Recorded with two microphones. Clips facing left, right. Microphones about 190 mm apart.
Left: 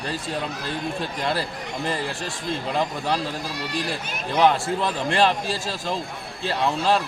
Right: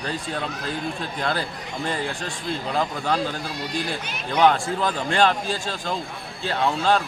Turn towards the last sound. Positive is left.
turn(degrees=0)  # may be behind; listen again after turning